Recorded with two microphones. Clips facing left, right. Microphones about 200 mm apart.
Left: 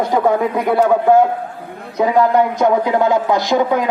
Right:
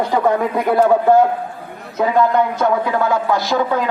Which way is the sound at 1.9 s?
15° left (ahead or behind).